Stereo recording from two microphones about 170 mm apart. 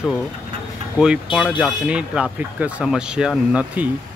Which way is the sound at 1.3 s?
30° left (ahead or behind).